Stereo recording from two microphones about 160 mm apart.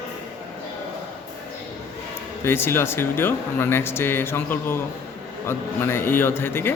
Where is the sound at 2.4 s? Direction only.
15° left (ahead or behind).